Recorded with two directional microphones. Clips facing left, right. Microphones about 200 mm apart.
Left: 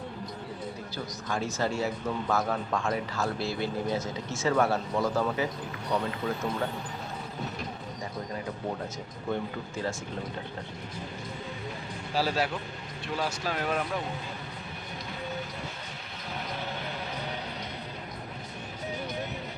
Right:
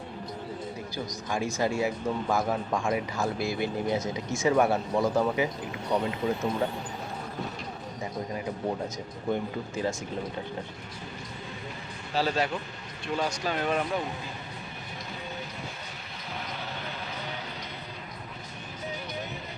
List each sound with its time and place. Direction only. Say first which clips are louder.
1.3 s speech: right 2 dB; 10° right (ahead or behind)
9.3 s speech: right 2 dB; 15° right (ahead or behind)
12.1 s speech: right 1 dB; 10° left (ahead or behind)